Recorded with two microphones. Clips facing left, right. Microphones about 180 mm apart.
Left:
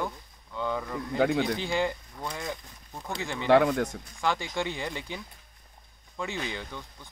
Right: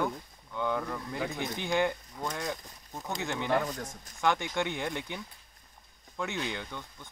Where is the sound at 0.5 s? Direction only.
Centre (ahead or behind).